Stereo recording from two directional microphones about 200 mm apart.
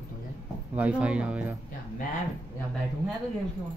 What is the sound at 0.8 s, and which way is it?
Speech, 5° right (ahead or behind).